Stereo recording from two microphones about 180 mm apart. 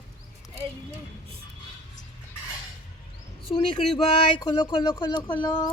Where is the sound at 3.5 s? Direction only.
30° left (ahead or behind).